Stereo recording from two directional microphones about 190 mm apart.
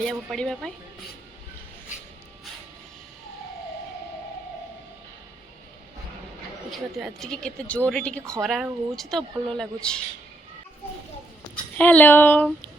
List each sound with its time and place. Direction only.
0.0 s speech: 5° left (ahead or behind)
6.7 s speech: centre (ahead or behind)
11.5 s a woman's voice: 10° left (ahead or behind)